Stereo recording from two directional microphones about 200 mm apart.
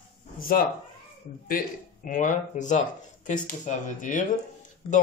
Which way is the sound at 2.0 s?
40° left (ahead or behind).